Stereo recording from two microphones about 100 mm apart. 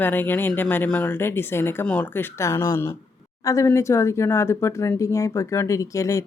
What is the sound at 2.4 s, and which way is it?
Speech, 30° left (ahead or behind).